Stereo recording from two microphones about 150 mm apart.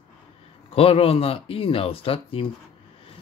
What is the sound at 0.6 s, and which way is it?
Speech, 40° left (ahead or behind).